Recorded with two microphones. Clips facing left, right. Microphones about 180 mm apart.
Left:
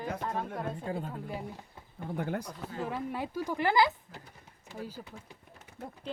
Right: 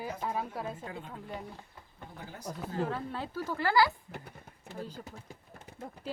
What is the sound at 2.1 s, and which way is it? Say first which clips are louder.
Speech: left 14 dB; 60° left (ahead or behind).